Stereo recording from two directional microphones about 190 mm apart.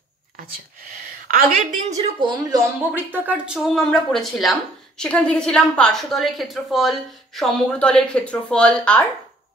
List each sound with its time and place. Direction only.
1.2 s a woman's voice: 45° right (ahead or behind)
2.1 s speech: 25° right (ahead or behind)
2.9 s speech: 10° right (ahead or behind)